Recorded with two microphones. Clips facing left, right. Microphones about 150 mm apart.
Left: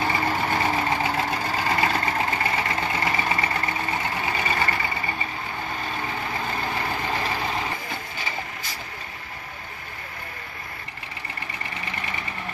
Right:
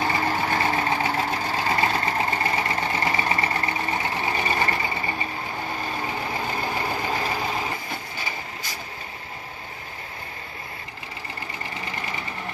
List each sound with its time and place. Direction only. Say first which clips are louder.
0.0 s vehicle: even; centre (ahead or behind)
1.9 s vehicle: even; 10° right (ahead or behind)
4.2 s vehicle: right 1 dB; 20° right (ahead or behind)
6.7 s vehicle: right 1 dB; 10° right (ahead or behind)